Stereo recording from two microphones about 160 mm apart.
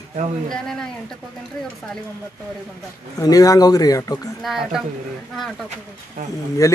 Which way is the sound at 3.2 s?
20° left (ahead or behind).